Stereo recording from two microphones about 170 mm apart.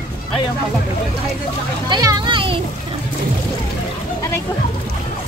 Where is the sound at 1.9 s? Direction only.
25° right (ahead or behind).